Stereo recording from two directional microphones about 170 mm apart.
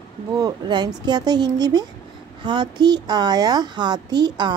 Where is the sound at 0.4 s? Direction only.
25° right (ahead or behind).